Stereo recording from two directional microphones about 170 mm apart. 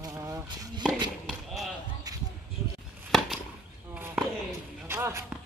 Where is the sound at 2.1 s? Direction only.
20° right (ahead or behind).